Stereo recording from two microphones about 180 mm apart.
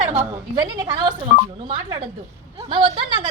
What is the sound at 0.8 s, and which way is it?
Speech, 25° right (ahead or behind).